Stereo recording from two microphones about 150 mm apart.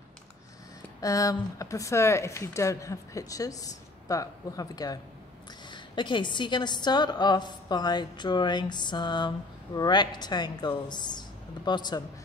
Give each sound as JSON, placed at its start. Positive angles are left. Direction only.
{"t": 1.0, "sound": "speech", "side_deg": 20}